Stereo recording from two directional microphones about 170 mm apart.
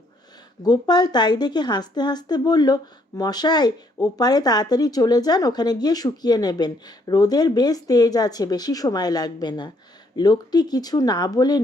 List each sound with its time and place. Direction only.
0.6 s a woman's voice: 25° left (ahead or behind)